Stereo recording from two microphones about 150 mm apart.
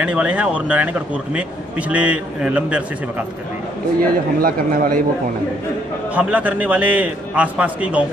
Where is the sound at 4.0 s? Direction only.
70° right (ahead or behind).